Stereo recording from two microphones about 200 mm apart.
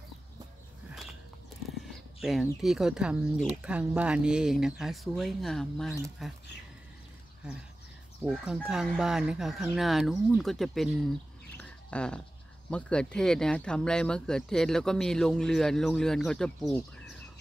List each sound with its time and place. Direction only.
2.6 s speech: 5° right (ahead or behind)
8.3 s speech: centre (ahead or behind)
11.5 s rodents: 5° left (ahead or behind)
12.6 s speech: 5° left (ahead or behind)